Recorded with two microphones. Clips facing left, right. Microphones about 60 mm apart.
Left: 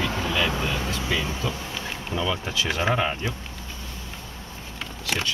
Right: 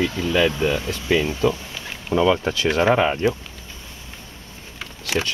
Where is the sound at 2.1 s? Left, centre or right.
Right.